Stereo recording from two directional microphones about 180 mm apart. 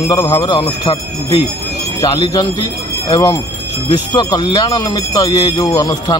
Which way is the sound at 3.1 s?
20° left (ahead or behind).